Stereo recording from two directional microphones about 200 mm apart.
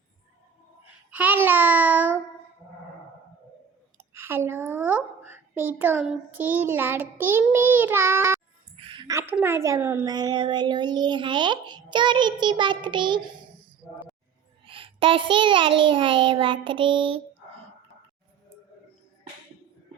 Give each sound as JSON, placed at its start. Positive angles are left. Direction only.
{"t": 1.1, "sound": "babbling", "side_deg": -10}
{"t": 4.1, "sound": "a child's voice", "side_deg": -10}
{"t": 8.8, "sound": "music", "side_deg": -25}
{"t": 9.3, "sound": "a child's voice", "side_deg": -10}
{"t": 14.7, "sound": "a child's voice", "side_deg": -25}